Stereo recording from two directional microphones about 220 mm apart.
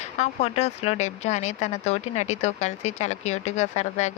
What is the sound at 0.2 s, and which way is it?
Speech, 30° left (ahead or behind).